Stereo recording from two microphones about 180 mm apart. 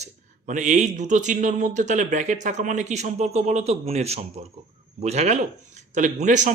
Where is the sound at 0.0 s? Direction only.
45° right (ahead or behind).